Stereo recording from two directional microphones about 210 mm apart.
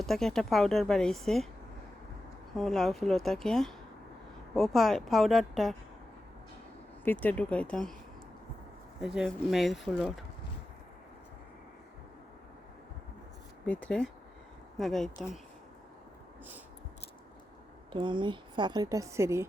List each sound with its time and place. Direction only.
0.0 s speech: centre (ahead or behind)
2.6 s speech: centre (ahead or behind)
7.0 s speech: 10° left (ahead or behind)
9.0 s speech: centre (ahead or behind)
13.7 s speech: 5° left (ahead or behind)
17.9 s a woman's voice: 20° right (ahead or behind)